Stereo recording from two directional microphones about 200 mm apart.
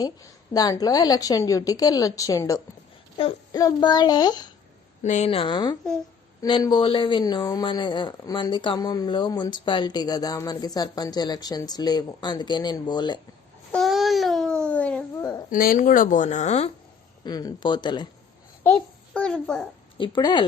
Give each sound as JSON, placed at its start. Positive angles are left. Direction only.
{"t": 0.5, "sound": "a woman's voice", "side_deg": 20}
{"t": 5.0, "sound": "speech", "side_deg": 35}
{"t": 13.7, "sound": "babbling", "side_deg": 0}
{"t": 15.4, "sound": "speech", "side_deg": 45}
{"t": 17.2, "sound": "speech", "side_deg": 20}
{"t": 19.1, "sound": "a child's voice", "side_deg": 5}
{"t": 20.0, "sound": "speech", "side_deg": 25}